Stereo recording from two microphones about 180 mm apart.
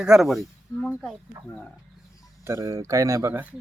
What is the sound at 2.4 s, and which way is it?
Speech, 15° right (ahead or behind).